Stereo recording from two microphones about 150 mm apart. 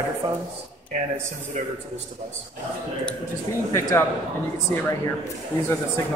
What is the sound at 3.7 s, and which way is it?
Speech, 20° left (ahead or behind).